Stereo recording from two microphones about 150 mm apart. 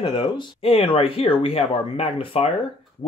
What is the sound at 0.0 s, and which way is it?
Speech, 30° left (ahead or behind).